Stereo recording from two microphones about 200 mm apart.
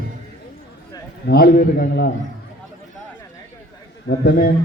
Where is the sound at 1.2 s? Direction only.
50° left (ahead or behind).